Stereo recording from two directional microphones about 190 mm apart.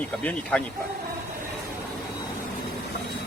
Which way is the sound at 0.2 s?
5° left (ahead or behind).